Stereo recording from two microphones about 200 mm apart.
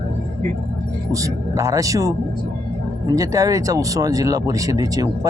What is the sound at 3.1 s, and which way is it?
Speech, 15° right (ahead or behind).